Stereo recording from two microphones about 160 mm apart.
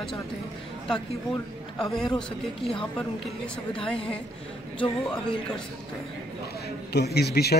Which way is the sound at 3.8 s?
35° left (ahead or behind).